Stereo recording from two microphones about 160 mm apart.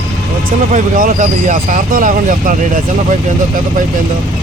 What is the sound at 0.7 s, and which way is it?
Speech, 55° right (ahead or behind).